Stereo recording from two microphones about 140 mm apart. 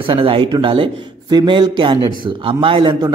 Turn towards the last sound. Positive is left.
turn(degrees=-35)  # may be behind; listen again after turning